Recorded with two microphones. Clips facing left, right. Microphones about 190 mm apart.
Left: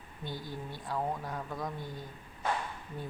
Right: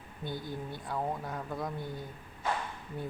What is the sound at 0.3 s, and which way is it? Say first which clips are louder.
Speech: right 2 dB; 55° right (ahead or behind).